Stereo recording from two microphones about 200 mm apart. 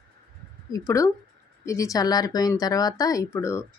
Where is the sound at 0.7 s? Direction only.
15° left (ahead or behind).